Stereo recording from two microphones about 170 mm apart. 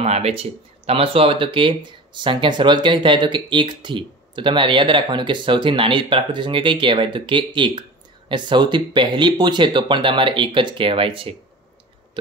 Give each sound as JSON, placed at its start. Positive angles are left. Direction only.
{"t": 0.0, "sound": "speech", "side_deg": -40}